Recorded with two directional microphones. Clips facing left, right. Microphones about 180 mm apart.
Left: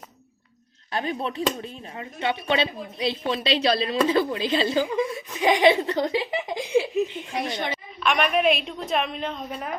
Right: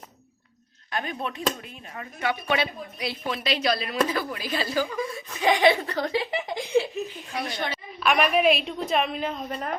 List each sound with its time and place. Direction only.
0.9 s a woman's voice: 30° left (ahead or behind)
7.9 s a woman's voice: 5° right (ahead or behind)